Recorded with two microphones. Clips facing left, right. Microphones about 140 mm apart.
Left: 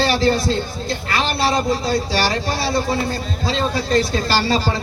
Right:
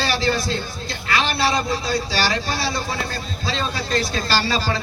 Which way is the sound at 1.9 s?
50° left (ahead or behind).